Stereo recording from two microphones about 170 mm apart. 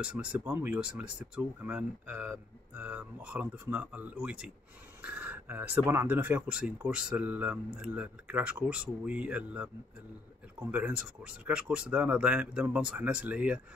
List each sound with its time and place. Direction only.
0.0 s speech: 5° right (ahead or behind)
10.7 s speech: 10° right (ahead or behind)